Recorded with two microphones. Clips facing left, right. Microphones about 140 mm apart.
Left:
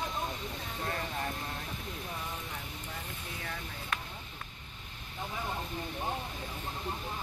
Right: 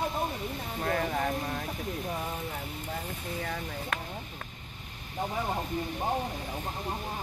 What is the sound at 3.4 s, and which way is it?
Speech, 45° right (ahead or behind).